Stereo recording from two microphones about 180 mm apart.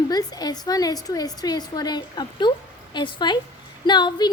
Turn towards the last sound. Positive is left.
turn(degrees=25)  # may be behind; listen again after turning